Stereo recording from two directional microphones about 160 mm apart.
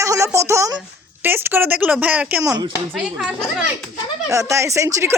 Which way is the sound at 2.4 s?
25° right (ahead or behind).